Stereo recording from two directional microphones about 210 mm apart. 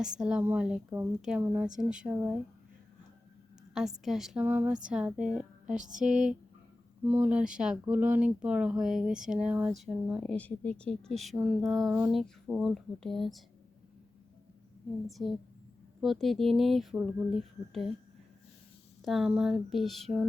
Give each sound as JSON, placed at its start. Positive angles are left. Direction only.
{"t": 0.0, "sound": "speech", "side_deg": -5}
{"t": 3.8, "sound": "speech", "side_deg": 0}
{"t": 5.7, "sound": "a sound", "side_deg": -35}
{"t": 7.0, "sound": "speech", "side_deg": -10}
{"t": 15.0, "sound": "speech", "side_deg": 0}
{"t": 19.0, "sound": "speech", "side_deg": 0}